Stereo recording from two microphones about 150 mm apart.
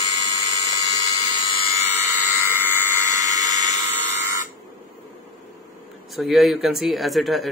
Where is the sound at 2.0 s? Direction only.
15° right (ahead or behind).